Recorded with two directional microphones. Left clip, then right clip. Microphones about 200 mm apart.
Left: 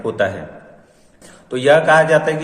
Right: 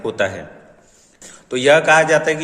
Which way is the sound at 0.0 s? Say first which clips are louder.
Left 1 dB; 30° right (ahead or behind).